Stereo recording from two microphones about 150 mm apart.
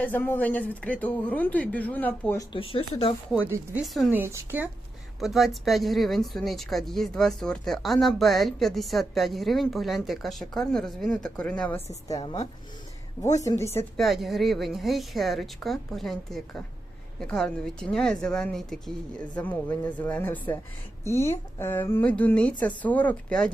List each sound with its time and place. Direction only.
0.0 s speech: 10° left (ahead or behind)
2.4 s speech: 35° left (ahead or behind)
3.4 s speech: 15° right (ahead or behind)
5.2 s speech: centre (ahead or behind)
11.9 s a woman's voice: 25° left (ahead or behind)
13.4 s a woman's voice: 20° left (ahead or behind)
13.9 s speech: centre (ahead or behind)